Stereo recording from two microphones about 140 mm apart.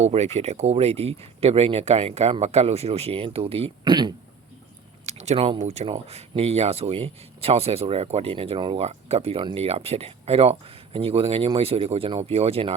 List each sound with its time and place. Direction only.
0.0 s speech: 50° right (ahead or behind)
5.0 s a sound: 50° right (ahead or behind)
5.5 s speech: 50° right (ahead or behind)